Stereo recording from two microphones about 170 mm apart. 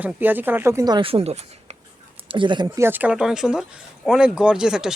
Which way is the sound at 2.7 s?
10° right (ahead or behind).